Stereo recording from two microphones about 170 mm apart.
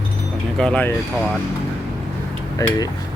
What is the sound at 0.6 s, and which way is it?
Speech, 5° left (ahead or behind).